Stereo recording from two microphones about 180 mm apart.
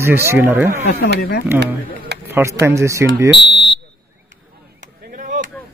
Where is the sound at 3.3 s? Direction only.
75° left (ahead or behind).